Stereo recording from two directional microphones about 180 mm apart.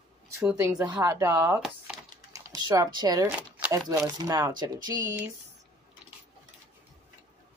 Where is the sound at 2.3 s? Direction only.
20° right (ahead or behind).